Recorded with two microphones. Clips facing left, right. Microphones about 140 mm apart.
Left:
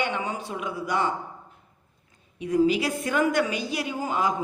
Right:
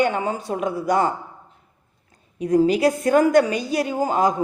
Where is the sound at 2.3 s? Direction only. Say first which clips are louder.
Right 4 dB; 40° right (ahead or behind).